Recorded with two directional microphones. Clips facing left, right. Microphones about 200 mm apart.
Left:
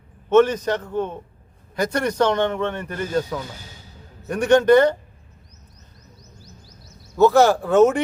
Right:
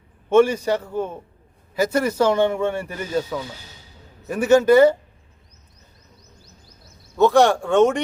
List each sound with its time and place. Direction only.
0.3 s speech: 10° right (ahead or behind)
6.4 s music: 55° right (ahead or behind)
7.2 s speech: centre (ahead or behind)